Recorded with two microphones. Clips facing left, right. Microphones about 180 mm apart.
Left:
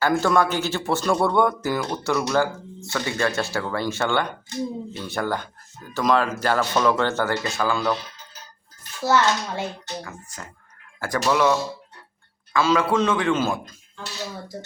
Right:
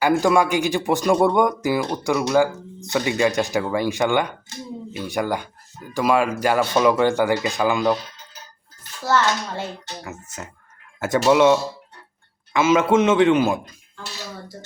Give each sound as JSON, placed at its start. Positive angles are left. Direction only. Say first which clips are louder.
{"t": 0.0, "sound": "speech", "louder": "right 3 dB", "side_deg": -10}
{"t": 9.0, "sound": "a child's voice", "louder": "even", "side_deg": 10}
{"t": 10.0, "sound": "a man's voice", "louder": "right 3 dB", "side_deg": -25}
{"t": 12.5, "sound": "a man's voice", "louder": "right 3 dB", "side_deg": -20}